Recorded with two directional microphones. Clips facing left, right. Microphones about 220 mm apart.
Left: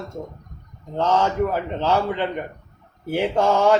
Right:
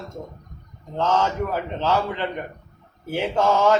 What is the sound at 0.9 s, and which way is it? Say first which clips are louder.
Mantra: left 2 dB; 15° left (ahead or behind).